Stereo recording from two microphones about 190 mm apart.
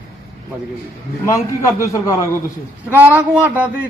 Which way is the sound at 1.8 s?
15° left (ahead or behind).